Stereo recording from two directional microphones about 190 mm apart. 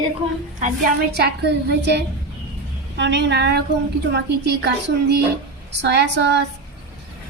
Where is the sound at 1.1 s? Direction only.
60° right (ahead or behind).